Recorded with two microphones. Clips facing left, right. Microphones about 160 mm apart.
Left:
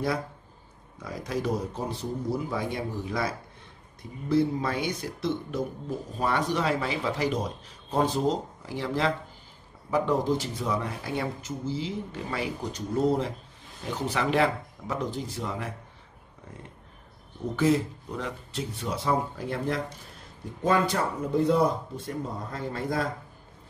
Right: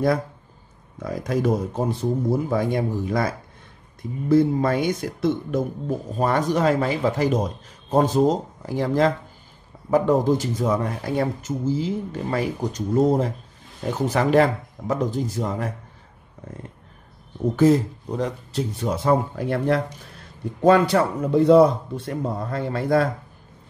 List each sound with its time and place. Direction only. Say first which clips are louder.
0.9 s speech: right 7 dB; 50° right (ahead or behind)
17.6 s speech: right 6 dB; 40° right (ahead or behind); by 23.0 s 70° right (ahead or behind)